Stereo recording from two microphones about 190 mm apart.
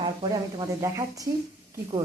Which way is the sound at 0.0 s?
20° right (ahead or behind).